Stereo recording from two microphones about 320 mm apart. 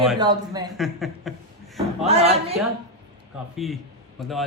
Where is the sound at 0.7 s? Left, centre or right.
Centre.